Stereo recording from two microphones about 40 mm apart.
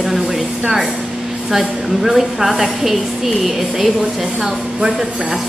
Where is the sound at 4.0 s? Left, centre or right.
Centre.